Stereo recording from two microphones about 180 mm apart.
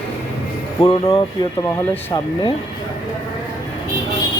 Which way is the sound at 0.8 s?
25° left (ahead or behind).